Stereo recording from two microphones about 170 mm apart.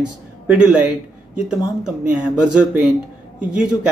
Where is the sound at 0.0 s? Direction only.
5° right (ahead or behind).